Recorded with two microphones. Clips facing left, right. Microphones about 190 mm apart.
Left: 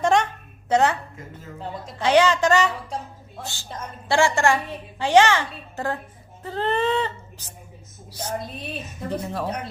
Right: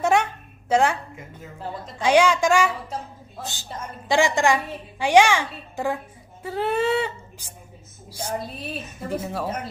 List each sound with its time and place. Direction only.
0.0 s a sound: 10° right (ahead or behind)
0.7 s a woman's voice: 10° right (ahead or behind)
2.0 s a woman's voice: 10° right (ahead or behind)
3.4 s a woman's voice: 20° right (ahead or behind)